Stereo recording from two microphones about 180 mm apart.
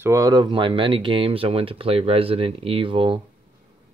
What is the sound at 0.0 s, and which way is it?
Speech, 20° right (ahead or behind).